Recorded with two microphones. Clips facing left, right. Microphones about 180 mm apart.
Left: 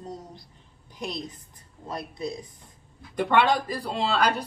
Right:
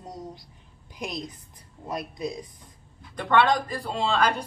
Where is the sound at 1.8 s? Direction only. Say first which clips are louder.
Right 1 dB; 15° right (ahead or behind).